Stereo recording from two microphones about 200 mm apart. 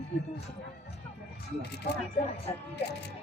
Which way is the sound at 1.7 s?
55° left (ahead or behind).